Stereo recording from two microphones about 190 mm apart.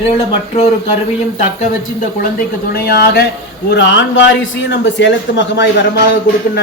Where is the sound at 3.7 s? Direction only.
70° left (ahead or behind).